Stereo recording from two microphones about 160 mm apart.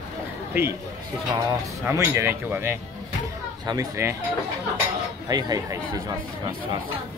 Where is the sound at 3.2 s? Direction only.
25° right (ahead or behind).